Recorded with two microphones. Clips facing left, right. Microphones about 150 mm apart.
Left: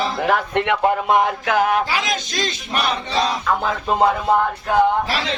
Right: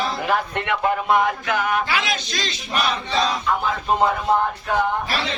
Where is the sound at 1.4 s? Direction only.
90° left.